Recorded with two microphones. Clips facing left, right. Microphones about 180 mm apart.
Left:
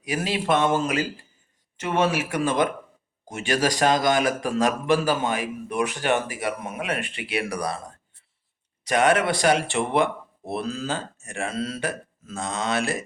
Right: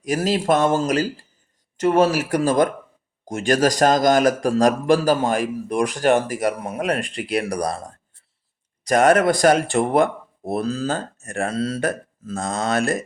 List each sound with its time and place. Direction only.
0.0 s a man's voice: 40° right (ahead or behind)
8.8 s speech: 45° right (ahead or behind)